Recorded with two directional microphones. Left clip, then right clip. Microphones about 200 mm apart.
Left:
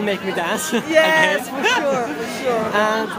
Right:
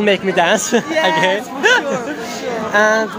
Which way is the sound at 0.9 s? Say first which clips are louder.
Left 3 dB; 30° left (ahead or behind).